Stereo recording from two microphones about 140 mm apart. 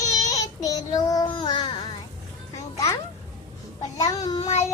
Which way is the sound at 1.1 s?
30° left (ahead or behind).